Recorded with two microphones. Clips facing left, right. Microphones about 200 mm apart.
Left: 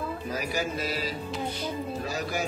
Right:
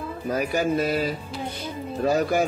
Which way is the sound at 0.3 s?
55° right (ahead or behind).